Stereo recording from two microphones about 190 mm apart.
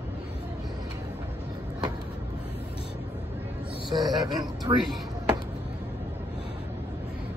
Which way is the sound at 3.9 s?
20° right (ahead or behind).